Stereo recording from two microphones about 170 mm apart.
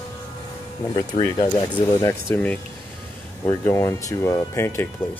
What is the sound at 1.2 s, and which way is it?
Speech, 25° left (ahead or behind).